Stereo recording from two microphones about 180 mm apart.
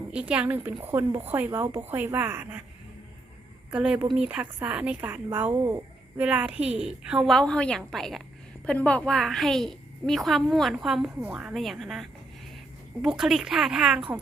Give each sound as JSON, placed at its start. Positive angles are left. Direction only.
{"t": 0.1, "sound": "a woman's voice", "side_deg": -5}
{"t": 3.7, "sound": "a woman's voice", "side_deg": -5}
{"t": 5.6, "sound": "a sound", "side_deg": -20}
{"t": 6.2, "sound": "a woman's voice", "side_deg": -5}